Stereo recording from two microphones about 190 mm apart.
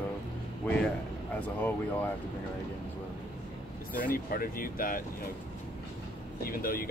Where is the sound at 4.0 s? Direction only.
45° left (ahead or behind).